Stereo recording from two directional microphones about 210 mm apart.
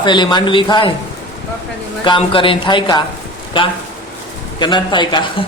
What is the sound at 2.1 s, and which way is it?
Speech, 25° left (ahead or behind).